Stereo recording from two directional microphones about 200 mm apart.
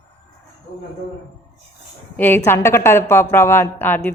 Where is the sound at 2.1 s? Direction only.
10° left (ahead or behind).